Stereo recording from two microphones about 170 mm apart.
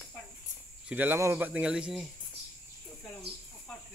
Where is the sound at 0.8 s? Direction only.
10° right (ahead or behind).